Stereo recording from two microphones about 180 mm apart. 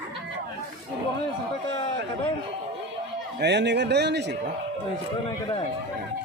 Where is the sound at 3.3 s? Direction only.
70° right (ahead or behind).